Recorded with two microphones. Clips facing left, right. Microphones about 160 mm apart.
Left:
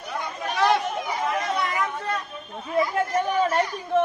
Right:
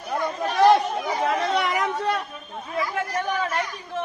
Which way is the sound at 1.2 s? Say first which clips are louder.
Right 3 dB; 75° right (ahead or behind).